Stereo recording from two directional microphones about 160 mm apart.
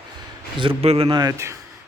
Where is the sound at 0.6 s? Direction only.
35° right (ahead or behind).